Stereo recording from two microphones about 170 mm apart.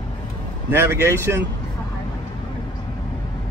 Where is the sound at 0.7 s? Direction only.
15° right (ahead or behind).